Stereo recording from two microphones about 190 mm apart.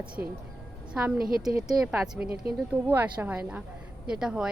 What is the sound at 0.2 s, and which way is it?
Speech, 15° right (ahead or behind).